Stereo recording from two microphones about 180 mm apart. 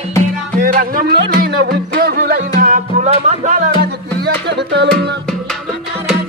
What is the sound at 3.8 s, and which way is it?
Music, 65° right (ahead or behind).